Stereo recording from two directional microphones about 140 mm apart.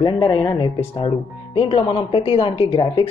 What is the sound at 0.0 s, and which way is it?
Speech, 35° left (ahead or behind).